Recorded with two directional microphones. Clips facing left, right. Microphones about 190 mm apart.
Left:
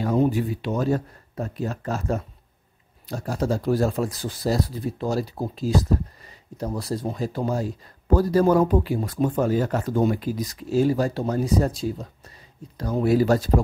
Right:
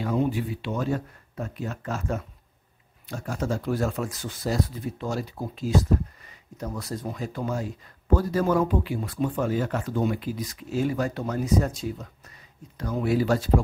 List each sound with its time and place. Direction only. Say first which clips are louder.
0.0 s speech: left 4 dB; 40° left (ahead or behind)